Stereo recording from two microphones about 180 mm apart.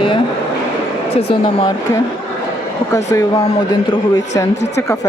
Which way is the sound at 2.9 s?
15° left (ahead or behind).